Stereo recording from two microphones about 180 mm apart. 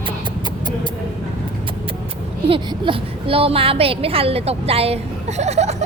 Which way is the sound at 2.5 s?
30° right (ahead or behind).